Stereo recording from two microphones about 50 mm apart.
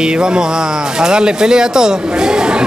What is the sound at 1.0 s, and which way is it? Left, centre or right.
Speech, centre.